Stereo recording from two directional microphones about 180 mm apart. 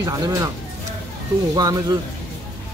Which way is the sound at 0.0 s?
15° right (ahead or behind).